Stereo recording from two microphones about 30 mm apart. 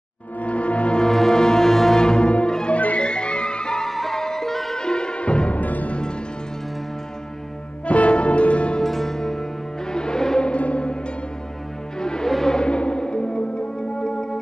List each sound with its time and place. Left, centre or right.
0.4 s music: left
1.1 s music: centre
2.0 s music: left
2.7 s music: left
3.0 s music: left
3.9 s music: centre
4.2 s music: centre
4.7 s music: left
5.5 s music: left
7.8 s music: left
8.8 s music: centre
10.5 s music: left
12.0 s music: left